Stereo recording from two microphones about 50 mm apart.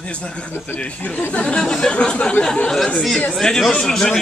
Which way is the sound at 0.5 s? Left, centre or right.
Left.